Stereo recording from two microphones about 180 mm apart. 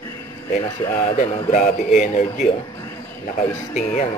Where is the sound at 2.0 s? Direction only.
40° left (ahead or behind).